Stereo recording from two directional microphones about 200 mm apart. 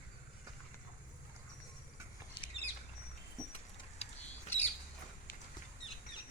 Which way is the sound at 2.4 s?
25° left (ahead or behind).